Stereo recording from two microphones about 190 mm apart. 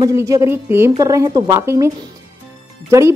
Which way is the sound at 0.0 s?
15° right (ahead or behind).